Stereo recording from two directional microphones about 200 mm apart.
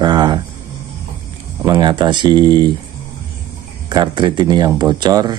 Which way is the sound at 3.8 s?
20° right (ahead or behind).